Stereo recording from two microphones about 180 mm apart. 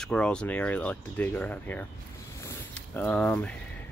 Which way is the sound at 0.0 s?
5° left (ahead or behind).